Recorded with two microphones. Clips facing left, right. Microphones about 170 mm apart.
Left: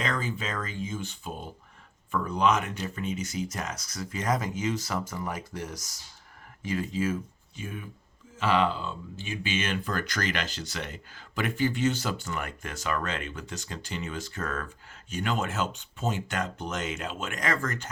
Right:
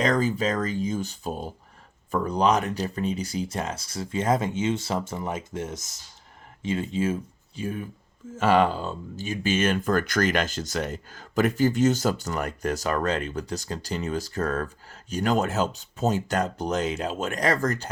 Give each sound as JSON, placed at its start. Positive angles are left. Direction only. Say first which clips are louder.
{"t": 0.0, "sound": "speech", "louder": "right 8 dB", "side_deg": -40}
{"t": 8.4, "sound": "speech", "louder": "right 5 dB", "side_deg": -45}